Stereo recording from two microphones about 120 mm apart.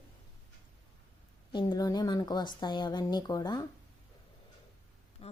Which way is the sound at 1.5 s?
40° left (ahead or behind).